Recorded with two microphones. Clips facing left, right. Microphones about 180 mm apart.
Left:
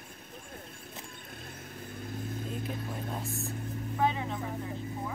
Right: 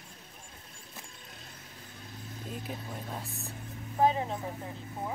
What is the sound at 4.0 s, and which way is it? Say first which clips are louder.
Vehicle: right 4 dB; 35° right (ahead or behind).